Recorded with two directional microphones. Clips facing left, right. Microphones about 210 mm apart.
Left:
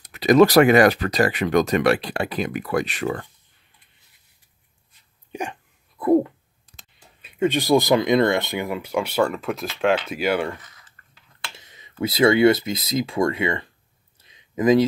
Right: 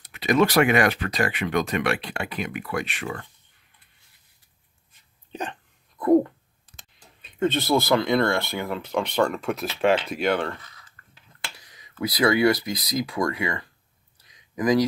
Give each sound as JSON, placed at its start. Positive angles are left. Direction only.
{"t": 0.1, "sound": "speech", "side_deg": 40}
{"t": 5.3, "sound": "dog", "side_deg": 10}
{"t": 7.2, "sound": "speech", "side_deg": 10}
{"t": 11.5, "sound": "speech", "side_deg": 25}
{"t": 14.1, "sound": "a sound", "side_deg": 25}